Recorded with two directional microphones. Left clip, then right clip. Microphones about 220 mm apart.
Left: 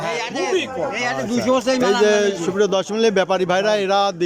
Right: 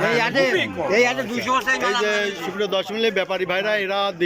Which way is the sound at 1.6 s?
55° left (ahead or behind).